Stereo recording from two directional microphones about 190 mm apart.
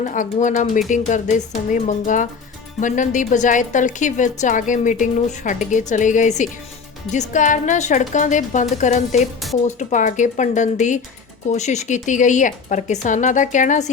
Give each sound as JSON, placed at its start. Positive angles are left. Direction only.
{"t": 0.0, "sound": "a woman's voice", "side_deg": 40}